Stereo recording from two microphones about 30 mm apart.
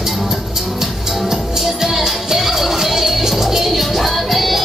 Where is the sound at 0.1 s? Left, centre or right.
Centre.